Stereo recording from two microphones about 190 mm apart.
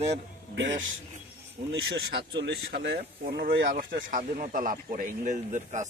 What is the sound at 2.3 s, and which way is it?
Speech, 65° right (ahead or behind).